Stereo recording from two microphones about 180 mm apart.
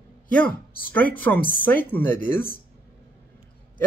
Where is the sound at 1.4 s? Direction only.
55° left (ahead or behind).